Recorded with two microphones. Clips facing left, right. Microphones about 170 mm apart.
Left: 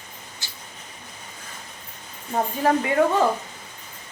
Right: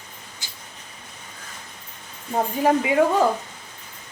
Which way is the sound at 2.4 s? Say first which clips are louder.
Right 1 dB; 10° right (ahead or behind).